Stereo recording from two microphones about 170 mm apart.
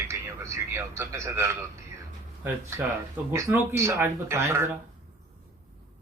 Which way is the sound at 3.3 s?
15° right (ahead or behind).